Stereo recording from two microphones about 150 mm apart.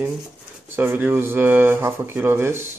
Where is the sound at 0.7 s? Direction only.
15° right (ahead or behind).